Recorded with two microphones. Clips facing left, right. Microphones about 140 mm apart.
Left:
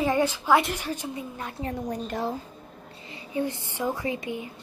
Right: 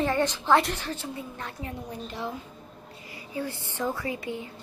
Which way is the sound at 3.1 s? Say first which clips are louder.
Left 5 dB; 25° left (ahead or behind).